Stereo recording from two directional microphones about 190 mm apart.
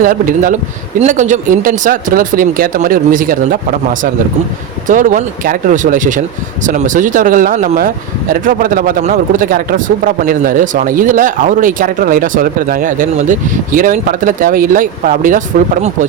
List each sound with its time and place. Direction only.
0.0 s speech: 45° right (ahead or behind)